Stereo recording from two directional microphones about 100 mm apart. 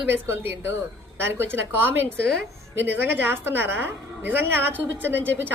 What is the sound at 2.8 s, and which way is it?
A woman's voice, 20° right (ahead or behind).